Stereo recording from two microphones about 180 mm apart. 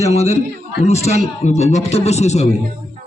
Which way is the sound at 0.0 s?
35° left (ahead or behind).